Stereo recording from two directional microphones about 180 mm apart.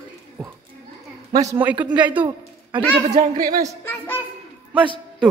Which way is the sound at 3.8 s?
10° left (ahead or behind).